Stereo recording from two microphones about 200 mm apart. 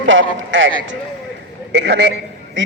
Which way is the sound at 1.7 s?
60° right (ahead or behind).